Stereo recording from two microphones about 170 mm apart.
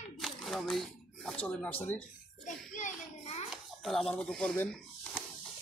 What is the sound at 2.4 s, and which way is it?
Hands, 45° left (ahead or behind).